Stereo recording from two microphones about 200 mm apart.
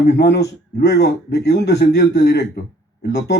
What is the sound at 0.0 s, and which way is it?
Speech, 55° left (ahead or behind).